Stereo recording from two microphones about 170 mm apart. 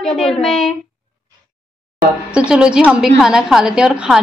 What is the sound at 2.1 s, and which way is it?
A woman's voice, 5° right (ahead or behind).